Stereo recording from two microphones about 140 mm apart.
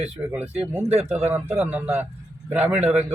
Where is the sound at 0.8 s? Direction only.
45° right (ahead or behind).